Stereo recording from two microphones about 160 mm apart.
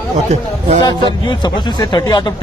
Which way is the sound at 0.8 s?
25° left (ahead or behind).